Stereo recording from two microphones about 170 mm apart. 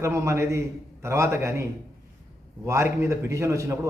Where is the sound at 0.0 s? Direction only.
15° right (ahead or behind).